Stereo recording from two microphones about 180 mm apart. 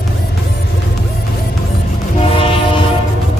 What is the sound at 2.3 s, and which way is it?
Train, 30° left (ahead or behind).